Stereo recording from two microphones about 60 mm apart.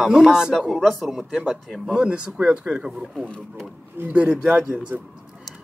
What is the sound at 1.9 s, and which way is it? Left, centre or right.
Speech, centre.